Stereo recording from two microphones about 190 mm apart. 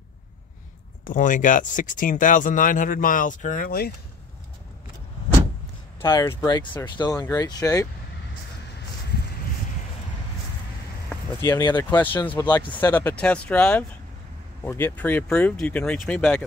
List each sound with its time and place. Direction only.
1.0 s speech: 45° left (ahead or behind)
6.0 s speech: 20° left (ahead or behind)
11.1 s vehicle: 15° left (ahead or behind)
12.0 s speech: 10° left (ahead or behind)
12.3 s speech: 20° left (ahead or behind)